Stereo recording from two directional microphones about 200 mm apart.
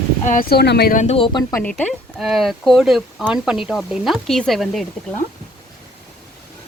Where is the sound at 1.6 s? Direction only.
5° left (ahead or behind).